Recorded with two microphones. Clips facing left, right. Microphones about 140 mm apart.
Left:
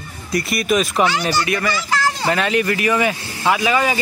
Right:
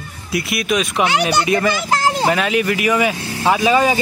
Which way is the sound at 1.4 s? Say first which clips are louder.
Right 5 dB; 20° right (ahead or behind).